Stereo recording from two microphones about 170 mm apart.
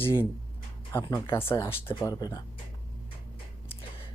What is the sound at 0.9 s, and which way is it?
Speech, 30° left (ahead or behind).